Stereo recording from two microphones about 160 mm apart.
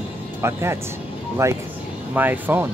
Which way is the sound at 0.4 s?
15° right (ahead or behind).